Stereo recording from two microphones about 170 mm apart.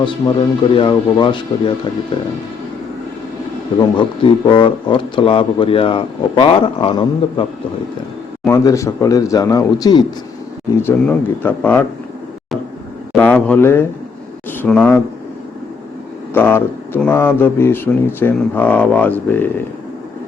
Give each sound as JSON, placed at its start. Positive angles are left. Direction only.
{"t": 0.0, "sound": "speech", "side_deg": 30}
{"t": 3.8, "sound": "speech", "side_deg": 30}
{"t": 8.4, "sound": "speech", "side_deg": 20}
{"t": 10.8, "sound": "speech", "side_deg": 10}
{"t": 13.1, "sound": "speech", "side_deg": 10}
{"t": 16.3, "sound": "speech", "side_deg": 15}